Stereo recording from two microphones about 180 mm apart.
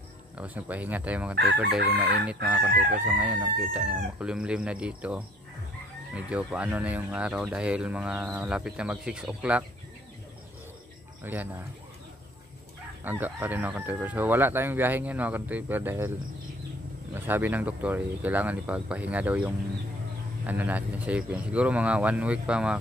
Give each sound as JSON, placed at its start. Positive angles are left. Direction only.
{"t": 0.4, "sound": "speech", "side_deg": -10}
{"t": 1.3, "sound": "chicken", "side_deg": -70}
{"t": 2.7, "sound": "chicken", "side_deg": -55}
{"t": 3.1, "sound": "speech", "side_deg": -10}
{"t": 11.3, "sound": "speech", "side_deg": -10}
{"t": 13.0, "sound": "speech", "side_deg": -10}
{"t": 17.1, "sound": "speech", "side_deg": -10}